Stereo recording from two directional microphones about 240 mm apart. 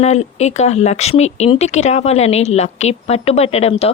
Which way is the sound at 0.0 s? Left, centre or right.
Left.